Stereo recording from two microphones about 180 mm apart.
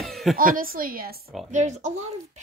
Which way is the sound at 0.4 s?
50° right (ahead or behind).